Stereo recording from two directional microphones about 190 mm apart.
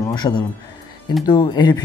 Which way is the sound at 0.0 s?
25° left (ahead or behind).